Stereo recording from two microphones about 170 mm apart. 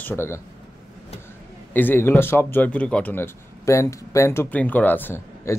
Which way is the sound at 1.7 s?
10° left (ahead or behind).